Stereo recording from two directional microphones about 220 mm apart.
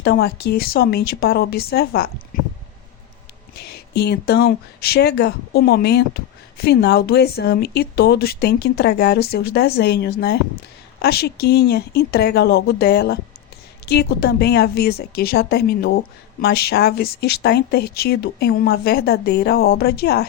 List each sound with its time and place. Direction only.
0.0 s speech: 50° left (ahead or behind)
3.5 s speech: 45° left (ahead or behind)